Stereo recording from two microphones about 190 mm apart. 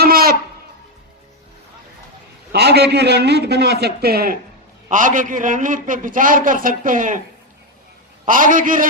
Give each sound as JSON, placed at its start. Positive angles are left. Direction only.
{"t": 0.0, "sound": "a sound", "side_deg": -50}
{"t": 2.5, "sound": "a man's voice", "side_deg": -60}
{"t": 4.9, "sound": "a man's voice", "side_deg": -45}
{"t": 8.3, "sound": "a man's voice", "side_deg": -45}